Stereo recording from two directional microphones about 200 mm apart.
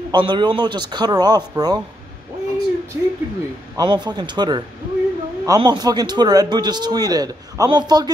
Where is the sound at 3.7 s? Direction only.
20° right (ahead or behind).